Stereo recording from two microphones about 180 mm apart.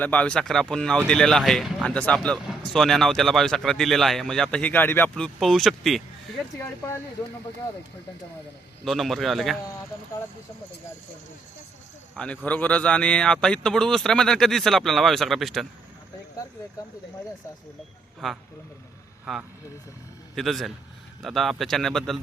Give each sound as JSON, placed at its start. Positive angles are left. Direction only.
{"t": 0.0, "sound": "speech", "side_deg": 5}
{"t": 6.6, "sound": "speech", "side_deg": 15}
{"t": 8.8, "sound": "speech", "side_deg": 0}
{"t": 12.1, "sound": "speech", "side_deg": 5}
{"t": 18.2, "sound": "speech", "side_deg": 0}